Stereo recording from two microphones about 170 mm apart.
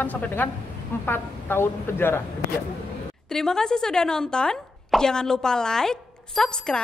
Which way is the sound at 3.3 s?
5° left (ahead or behind).